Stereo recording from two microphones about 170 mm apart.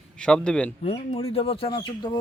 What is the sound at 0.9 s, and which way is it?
Speech, 40° left (ahead or behind).